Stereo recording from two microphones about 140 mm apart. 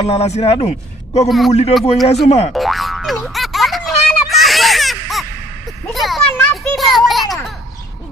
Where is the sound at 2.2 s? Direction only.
50° left (ahead or behind).